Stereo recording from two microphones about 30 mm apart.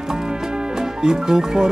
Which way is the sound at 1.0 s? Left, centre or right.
Right.